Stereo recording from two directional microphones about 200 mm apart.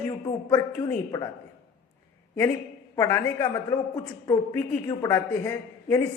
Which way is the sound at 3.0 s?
15° left (ahead or behind).